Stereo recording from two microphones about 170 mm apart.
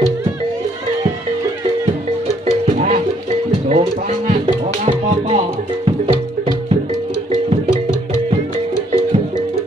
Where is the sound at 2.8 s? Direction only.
45° right (ahead or behind).